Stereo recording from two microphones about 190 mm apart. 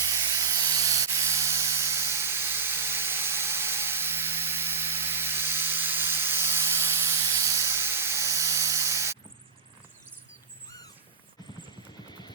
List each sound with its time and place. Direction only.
0.0 s spray: 15° right (ahead or behind)
12.0 s vehicle: 20° left (ahead or behind)